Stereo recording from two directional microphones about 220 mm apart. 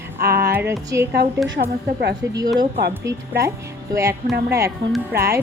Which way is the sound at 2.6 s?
50° right (ahead or behind).